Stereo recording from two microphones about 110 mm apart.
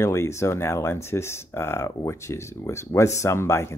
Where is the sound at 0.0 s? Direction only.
25° left (ahead or behind).